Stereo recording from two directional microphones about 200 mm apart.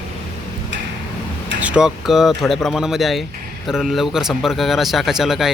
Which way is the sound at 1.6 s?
5° right (ahead or behind).